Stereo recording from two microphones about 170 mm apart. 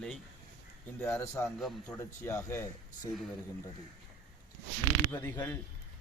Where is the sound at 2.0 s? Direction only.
15° left (ahead or behind).